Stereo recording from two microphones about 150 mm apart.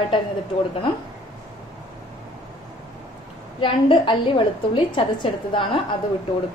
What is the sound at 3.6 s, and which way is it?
A woman's voice, 35° left (ahead or behind).